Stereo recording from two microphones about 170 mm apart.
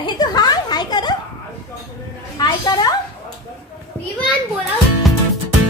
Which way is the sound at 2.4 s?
25° left (ahead or behind).